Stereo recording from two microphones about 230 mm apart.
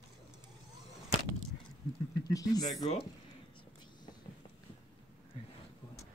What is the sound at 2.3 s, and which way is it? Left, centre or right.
Speech, centre.